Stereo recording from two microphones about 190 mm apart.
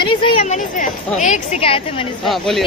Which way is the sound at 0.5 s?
40° left (ahead or behind).